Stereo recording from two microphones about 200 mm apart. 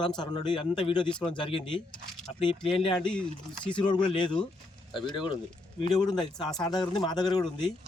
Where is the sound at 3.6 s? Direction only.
25° left (ahead or behind).